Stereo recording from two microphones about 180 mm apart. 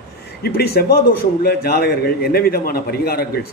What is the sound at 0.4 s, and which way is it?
A man's voice, 60° left (ahead or behind).